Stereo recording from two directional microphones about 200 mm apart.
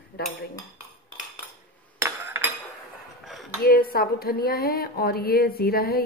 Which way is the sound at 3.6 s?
50° left (ahead or behind).